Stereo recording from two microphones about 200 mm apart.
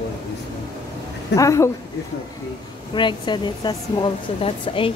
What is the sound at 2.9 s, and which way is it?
A woman's voice, 25° left (ahead or behind).